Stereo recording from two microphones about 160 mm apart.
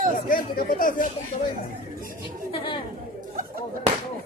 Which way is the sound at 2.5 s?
30° left (ahead or behind).